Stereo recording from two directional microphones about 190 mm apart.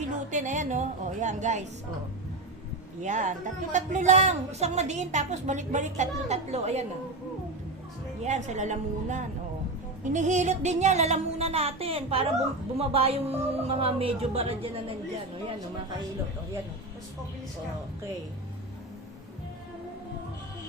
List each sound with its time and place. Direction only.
0.3 s a woman's voice: 40° right (ahead or behind)
3.0 s a woman's voice: 40° right (ahead or behind)
8.2 s a woman's voice: 40° right (ahead or behind)